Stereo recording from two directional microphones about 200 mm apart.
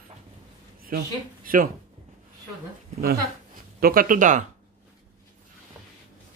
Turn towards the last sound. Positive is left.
turn(degrees=-40)  # may be behind; listen again after turning